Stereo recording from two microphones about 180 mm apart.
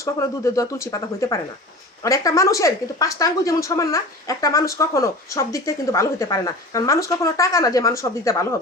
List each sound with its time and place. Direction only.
0.0 s a woman's voice: 15° left (ahead or behind)